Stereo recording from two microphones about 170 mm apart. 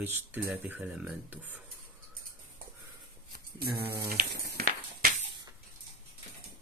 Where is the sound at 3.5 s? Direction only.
65° right (ahead or behind).